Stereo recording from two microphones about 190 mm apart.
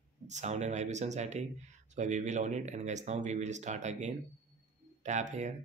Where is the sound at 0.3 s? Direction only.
35° right (ahead or behind).